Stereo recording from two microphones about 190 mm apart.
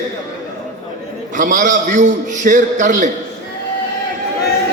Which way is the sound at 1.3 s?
45° right (ahead or behind).